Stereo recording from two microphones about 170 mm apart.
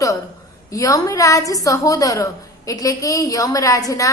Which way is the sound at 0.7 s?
20° left (ahead or behind).